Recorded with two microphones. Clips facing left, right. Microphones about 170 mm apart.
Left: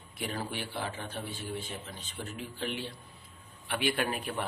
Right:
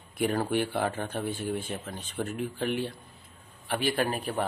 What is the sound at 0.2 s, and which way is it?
Speech, 50° right (ahead or behind).